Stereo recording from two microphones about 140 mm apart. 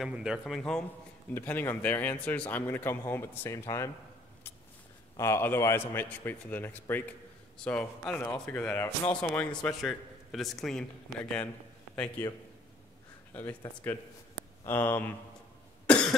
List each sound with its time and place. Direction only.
0.0 s a man's voice: 5° right (ahead or behind)
1.3 s a man's voice: 15° left (ahead or behind)
5.1 s a man's voice: 20° left (ahead or behind)
11.9 s a man's voice: 15° left (ahead or behind)
14.6 s a man's voice: 15° left (ahead or behind)
15.9 s cough: 5° left (ahead or behind)